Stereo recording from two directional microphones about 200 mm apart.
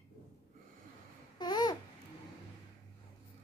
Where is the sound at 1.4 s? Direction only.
20° left (ahead or behind).